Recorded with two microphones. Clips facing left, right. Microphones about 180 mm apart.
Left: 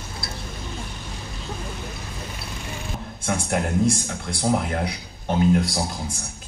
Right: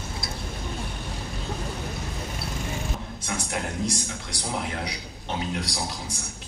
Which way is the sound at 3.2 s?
50° left (ahead or behind).